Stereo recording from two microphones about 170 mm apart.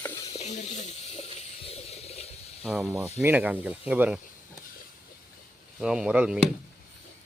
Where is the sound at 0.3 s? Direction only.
40° left (ahead or behind).